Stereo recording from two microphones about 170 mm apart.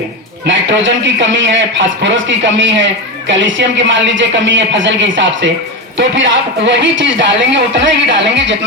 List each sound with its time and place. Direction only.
0.4 s a man's voice: 90° right